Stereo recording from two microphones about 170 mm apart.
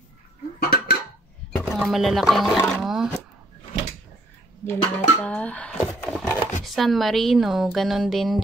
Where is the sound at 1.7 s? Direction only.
Centre (ahead or behind).